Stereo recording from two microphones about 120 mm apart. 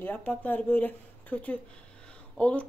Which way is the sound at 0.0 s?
15° left (ahead or behind).